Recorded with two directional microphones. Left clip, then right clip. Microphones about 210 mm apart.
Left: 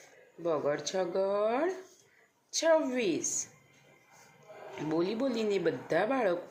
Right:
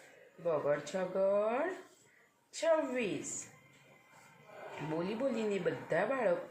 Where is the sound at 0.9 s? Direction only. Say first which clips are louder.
Left 2 dB; 55° left (ahead or behind).